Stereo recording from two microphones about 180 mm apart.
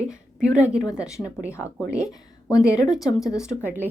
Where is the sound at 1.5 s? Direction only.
15° left (ahead or behind).